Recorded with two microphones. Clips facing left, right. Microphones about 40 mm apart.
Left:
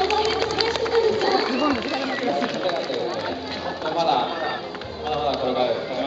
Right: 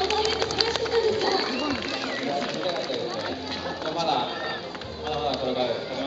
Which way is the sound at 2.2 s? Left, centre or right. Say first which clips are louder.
Left 4 dB; centre.